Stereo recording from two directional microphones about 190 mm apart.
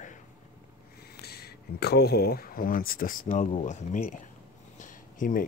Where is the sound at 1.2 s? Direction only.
55° left (ahead or behind).